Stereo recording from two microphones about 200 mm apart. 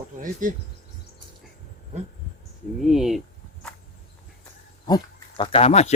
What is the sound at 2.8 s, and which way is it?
Speech, centre (ahead or behind).